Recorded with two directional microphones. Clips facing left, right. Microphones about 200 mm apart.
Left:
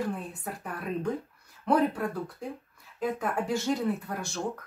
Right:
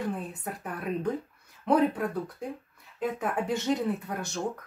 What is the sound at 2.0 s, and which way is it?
Speech, centre (ahead or behind).